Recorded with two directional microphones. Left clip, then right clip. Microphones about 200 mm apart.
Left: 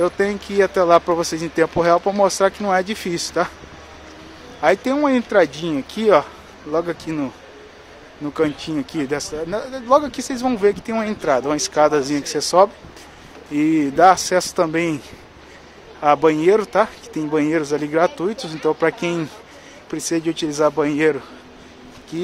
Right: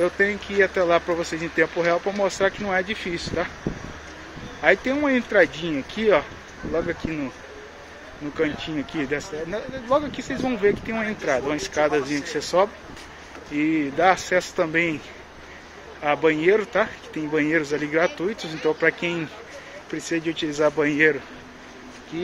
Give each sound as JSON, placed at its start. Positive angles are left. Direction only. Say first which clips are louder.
{"t": 0.0, "sound": "speech", "louder": "left 2 dB", "side_deg": 25}
{"t": 4.6, "sound": "speech", "louder": "left 3 dB", "side_deg": 25}
{"t": 8.4, "sound": "speech", "louder": "left 4 dB", "side_deg": 25}
{"t": 16.0, "sound": "speech", "louder": "left 6 dB", "side_deg": 25}
{"t": 20.6, "sound": "speech", "louder": "left 2 dB", "side_deg": 15}